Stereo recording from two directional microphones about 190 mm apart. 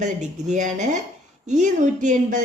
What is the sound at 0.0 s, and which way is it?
A woman's voice, 40° right (ahead or behind).